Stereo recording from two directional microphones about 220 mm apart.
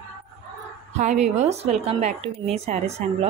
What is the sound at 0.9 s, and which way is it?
A woman's voice, 30° right (ahead or behind).